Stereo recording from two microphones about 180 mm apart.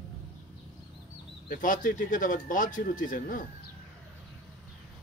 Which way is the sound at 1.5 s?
45° left (ahead or behind).